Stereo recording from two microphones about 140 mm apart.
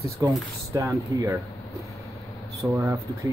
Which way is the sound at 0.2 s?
25° right (ahead or behind).